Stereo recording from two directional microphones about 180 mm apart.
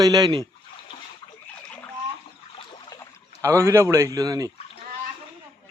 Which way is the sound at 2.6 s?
20° left (ahead or behind).